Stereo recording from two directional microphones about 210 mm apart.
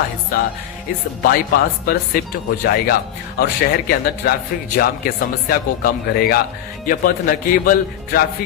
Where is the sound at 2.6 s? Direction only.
45° left (ahead or behind).